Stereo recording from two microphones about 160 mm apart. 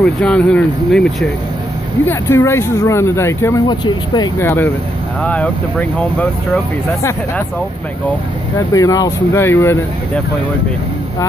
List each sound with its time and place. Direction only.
0.0 s speech: 5° left (ahead or behind)
2.0 s speech: 15° left (ahead or behind)
4.4 s speech: 15° left (ahead or behind)
7.0 s speech: 15° left (ahead or behind)
8.5 s speech: 20° left (ahead or behind)